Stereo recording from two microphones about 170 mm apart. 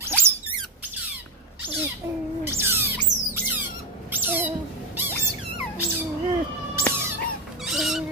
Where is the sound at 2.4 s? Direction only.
15° right (ahead or behind).